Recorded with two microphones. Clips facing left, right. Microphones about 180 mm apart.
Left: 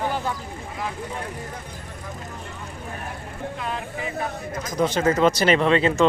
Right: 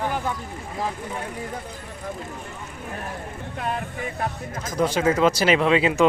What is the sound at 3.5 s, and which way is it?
Vehicle, 50° right (ahead or behind).